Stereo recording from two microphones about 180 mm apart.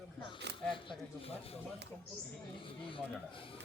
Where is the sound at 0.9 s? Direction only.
30° left (ahead or behind).